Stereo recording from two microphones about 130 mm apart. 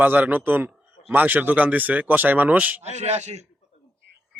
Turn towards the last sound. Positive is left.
turn(degrees=-55)  # may be behind; listen again after turning